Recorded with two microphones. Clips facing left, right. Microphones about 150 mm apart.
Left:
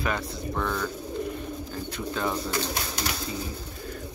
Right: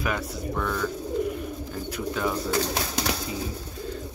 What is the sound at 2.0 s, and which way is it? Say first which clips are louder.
Speech: right 2 dB; 5° right (ahead or behind).